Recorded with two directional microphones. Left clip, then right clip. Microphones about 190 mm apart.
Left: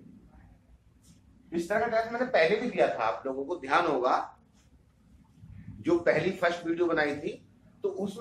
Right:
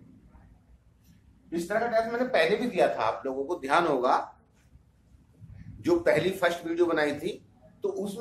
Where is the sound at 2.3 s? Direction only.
35° right (ahead or behind); by 4.2 s 50° right (ahead or behind).